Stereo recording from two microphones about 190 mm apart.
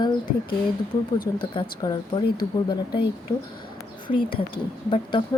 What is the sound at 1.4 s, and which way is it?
Speech, 25° left (ahead or behind).